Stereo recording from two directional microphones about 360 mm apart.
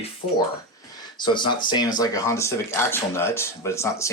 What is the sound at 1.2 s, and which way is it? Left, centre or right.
Speech, centre.